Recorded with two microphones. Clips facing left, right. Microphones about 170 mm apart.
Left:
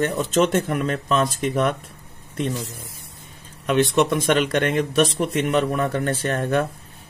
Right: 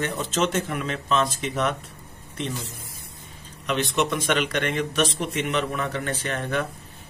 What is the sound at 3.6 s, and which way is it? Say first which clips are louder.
Speech: left 6 dB; 50° left (ahead or behind).